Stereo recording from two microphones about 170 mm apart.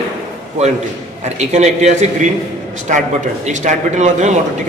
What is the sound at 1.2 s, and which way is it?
A man's voice, 40° right (ahead or behind).